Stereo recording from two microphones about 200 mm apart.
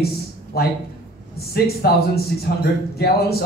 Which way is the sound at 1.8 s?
50° left (ahead or behind).